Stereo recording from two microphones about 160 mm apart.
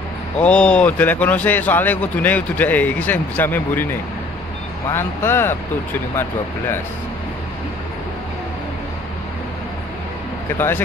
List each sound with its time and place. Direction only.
0.4 s a man's voice: 5° left (ahead or behind)